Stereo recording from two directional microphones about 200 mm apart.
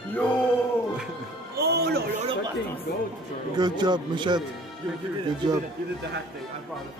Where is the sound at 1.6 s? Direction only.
55° right (ahead or behind).